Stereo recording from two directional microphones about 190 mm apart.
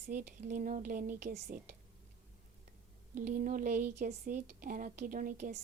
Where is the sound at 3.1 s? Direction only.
45° right (ahead or behind).